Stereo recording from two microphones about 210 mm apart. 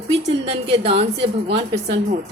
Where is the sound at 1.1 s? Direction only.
55° right (ahead or behind).